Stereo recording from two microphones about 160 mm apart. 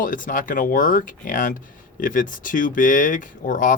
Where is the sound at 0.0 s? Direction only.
55° left (ahead or behind).